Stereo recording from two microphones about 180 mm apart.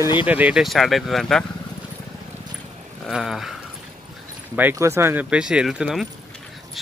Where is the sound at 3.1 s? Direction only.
Centre (ahead or behind).